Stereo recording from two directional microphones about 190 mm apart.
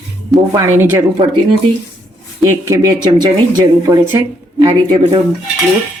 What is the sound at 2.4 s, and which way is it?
Speech, 15° right (ahead or behind).